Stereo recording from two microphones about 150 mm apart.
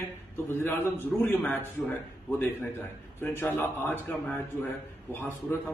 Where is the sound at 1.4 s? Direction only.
10° left (ahead or behind).